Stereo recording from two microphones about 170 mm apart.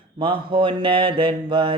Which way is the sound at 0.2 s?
30° right (ahead or behind).